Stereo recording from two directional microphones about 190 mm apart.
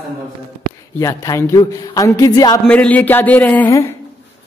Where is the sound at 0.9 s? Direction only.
15° left (ahead or behind).